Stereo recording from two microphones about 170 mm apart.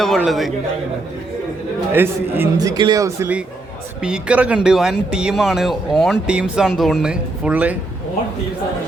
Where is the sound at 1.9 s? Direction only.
15° right (ahead or behind).